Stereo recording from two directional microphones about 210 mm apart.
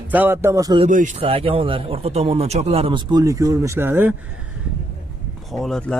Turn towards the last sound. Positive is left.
turn(degrees=0)  # may be behind; listen again after turning